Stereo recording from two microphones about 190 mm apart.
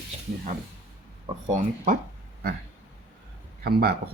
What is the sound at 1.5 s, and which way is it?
Speech, 40° right (ahead or behind).